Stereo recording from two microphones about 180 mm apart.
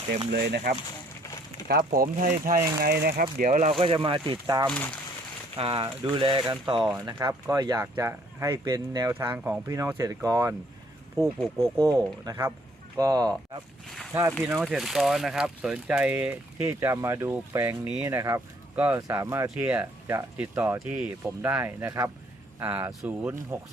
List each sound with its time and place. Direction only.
0.3 s speech: 65° right (ahead or behind)
1.9 s speech: 50° right (ahead or behind)
3.8 s speech: 30° right (ahead or behind)
4.7 s speech: 5° left (ahead or behind)
5.5 s speech: 30° right (ahead or behind)
11.8 s speech: 20° right (ahead or behind)
14.6 s speech: centre (ahead or behind)